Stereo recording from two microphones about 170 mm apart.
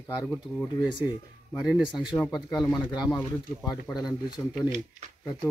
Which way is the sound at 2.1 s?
15° left (ahead or behind).